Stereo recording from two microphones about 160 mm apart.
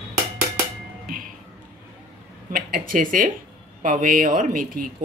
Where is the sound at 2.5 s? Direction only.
60° right (ahead or behind).